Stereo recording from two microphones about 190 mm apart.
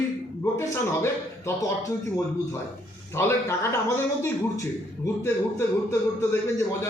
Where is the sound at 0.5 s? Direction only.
15° left (ahead or behind).